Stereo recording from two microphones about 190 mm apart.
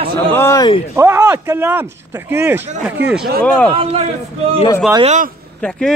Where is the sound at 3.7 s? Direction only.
30° right (ahead or behind).